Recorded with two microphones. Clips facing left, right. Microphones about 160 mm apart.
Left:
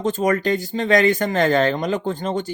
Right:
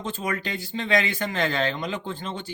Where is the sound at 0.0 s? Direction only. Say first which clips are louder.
Left 10 dB; 45° left (ahead or behind).